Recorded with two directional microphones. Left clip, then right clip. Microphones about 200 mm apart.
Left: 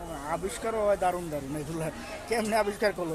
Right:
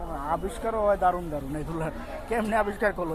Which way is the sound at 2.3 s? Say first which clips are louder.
Right 1 dB; 15° left (ahead or behind).